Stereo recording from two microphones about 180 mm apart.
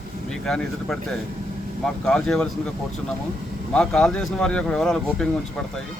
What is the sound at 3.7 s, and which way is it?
Speech, 5° left (ahead or behind).